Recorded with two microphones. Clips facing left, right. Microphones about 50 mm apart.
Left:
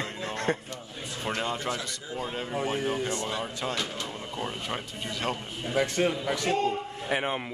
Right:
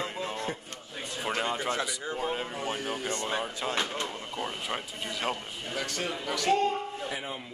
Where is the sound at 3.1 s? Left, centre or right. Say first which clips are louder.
Even; right.